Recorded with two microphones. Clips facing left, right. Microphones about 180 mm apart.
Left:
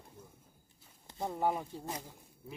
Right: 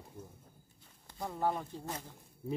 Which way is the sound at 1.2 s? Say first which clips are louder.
Left 1 dB; 20° left (ahead or behind).